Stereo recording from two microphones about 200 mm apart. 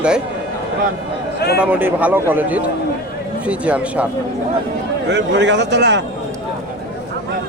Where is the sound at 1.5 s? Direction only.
10° right (ahead or behind).